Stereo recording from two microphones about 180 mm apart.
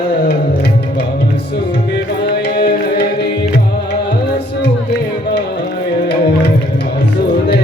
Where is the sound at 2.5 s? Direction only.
65° left (ahead or behind).